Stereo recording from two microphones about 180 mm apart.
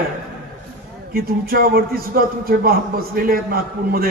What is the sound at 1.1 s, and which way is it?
A man's voice, 55° right (ahead or behind).